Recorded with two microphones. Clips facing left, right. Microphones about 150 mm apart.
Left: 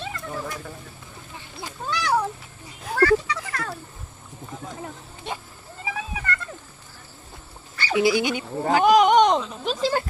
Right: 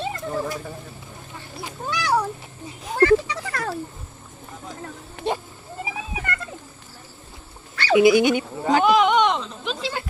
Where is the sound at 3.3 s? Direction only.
35° right (ahead or behind).